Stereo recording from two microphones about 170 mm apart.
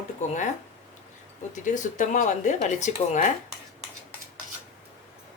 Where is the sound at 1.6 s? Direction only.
45° left (ahead or behind).